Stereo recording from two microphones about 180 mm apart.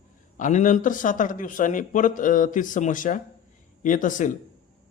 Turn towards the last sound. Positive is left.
turn(degrees=45)  # may be behind; listen again after turning